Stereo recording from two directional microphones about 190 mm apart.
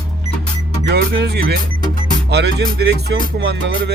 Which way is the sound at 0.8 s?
65° right (ahead or behind).